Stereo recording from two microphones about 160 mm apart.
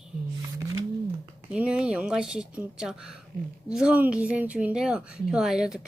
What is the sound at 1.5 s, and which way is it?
Speech, 5° right (ahead or behind).